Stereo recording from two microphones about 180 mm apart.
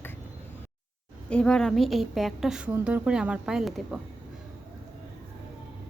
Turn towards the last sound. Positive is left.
turn(degrees=0)  # may be behind; listen again after turning